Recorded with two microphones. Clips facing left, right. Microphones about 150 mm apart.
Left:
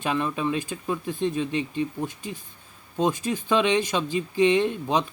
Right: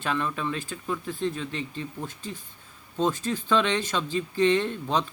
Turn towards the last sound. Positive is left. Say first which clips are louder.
# left 3 dB
turn(degrees=15)  # may be behind; listen again after turning